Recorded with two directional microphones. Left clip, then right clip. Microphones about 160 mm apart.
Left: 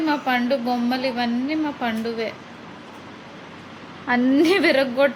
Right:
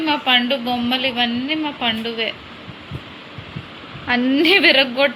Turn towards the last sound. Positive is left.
turn(degrees=10)  # may be behind; listen again after turning